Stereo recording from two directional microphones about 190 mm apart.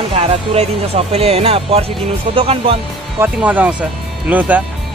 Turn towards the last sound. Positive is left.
turn(degrees=-10)  # may be behind; listen again after turning